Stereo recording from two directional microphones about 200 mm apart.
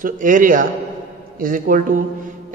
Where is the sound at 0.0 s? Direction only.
40° right (ahead or behind).